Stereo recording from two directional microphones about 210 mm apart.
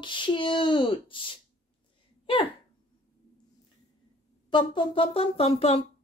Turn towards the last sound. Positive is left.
turn(degrees=30)  # may be behind; listen again after turning